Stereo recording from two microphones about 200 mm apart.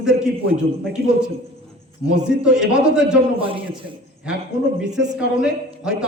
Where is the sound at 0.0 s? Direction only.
5° right (ahead or behind).